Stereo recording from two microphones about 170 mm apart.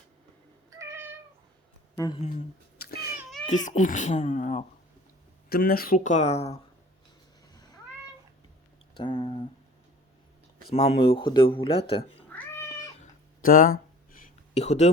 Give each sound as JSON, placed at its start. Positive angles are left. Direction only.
{"t": 0.8, "sound": "cat", "side_deg": -15}
{"t": 2.7, "sound": "cat", "side_deg": 65}
{"t": 3.5, "sound": "speech", "side_deg": 45}
{"t": 5.5, "sound": "speech", "side_deg": 65}
{"t": 9.0, "sound": "speech", "side_deg": 30}
{"t": 10.8, "sound": "speech", "side_deg": 35}
{"t": 12.3, "sound": "cat", "side_deg": 10}
{"t": 13.0, "sound": "a sound", "side_deg": 55}
{"t": 14.5, "sound": "speech", "side_deg": 40}